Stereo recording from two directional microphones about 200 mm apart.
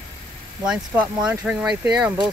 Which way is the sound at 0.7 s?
5° right (ahead or behind).